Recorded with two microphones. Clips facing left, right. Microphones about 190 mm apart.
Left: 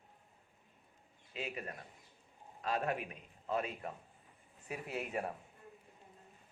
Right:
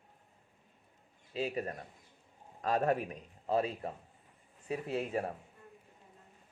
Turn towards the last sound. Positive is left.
turn(degrees=-35)  # may be behind; listen again after turning